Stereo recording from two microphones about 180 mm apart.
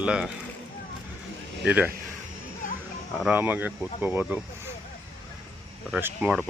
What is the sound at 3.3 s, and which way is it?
Speech, 10° right (ahead or behind).